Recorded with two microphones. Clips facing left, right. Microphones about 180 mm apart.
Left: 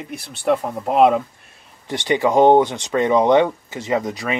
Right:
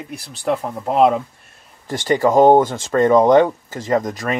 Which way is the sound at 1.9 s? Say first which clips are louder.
Right 2 dB; 45° right (ahead or behind).